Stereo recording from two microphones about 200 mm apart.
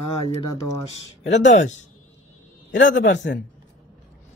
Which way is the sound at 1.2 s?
35° left (ahead or behind).